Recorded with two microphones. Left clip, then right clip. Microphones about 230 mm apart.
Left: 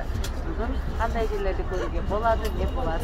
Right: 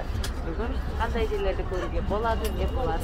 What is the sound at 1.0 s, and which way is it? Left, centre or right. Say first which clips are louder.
Speech: left 1 dB; centre.